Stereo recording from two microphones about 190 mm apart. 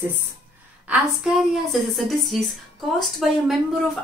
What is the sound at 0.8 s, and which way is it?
Speech, 5° right (ahead or behind).